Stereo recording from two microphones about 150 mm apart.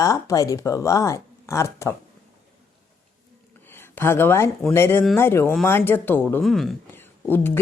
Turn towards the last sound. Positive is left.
turn(degrees=15)  # may be behind; listen again after turning